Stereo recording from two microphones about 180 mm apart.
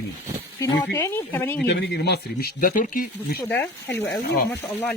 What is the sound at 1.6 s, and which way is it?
Speech, 70° left (ahead or behind).